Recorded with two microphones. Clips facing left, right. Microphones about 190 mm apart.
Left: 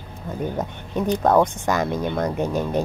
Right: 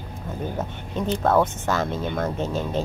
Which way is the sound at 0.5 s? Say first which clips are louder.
Left 3 dB; 15° left (ahead or behind).